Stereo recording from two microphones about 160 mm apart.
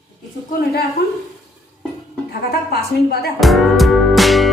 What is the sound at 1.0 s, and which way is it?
Speech, 90° left.